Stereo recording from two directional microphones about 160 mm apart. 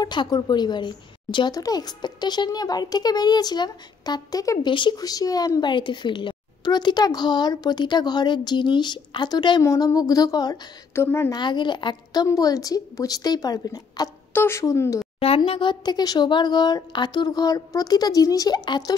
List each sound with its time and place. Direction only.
0.0 s a woman's voice: 25° left (ahead or behind)
11.3 s a woman's voice: 30° left (ahead or behind)
15.1 s a woman's voice: 35° left (ahead or behind)